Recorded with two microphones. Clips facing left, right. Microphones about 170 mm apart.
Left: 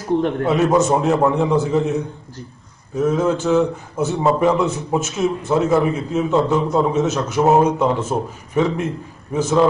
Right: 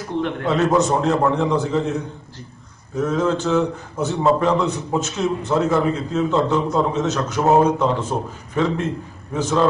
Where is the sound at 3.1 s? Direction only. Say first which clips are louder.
Left 2 dB; 15° left (ahead or behind).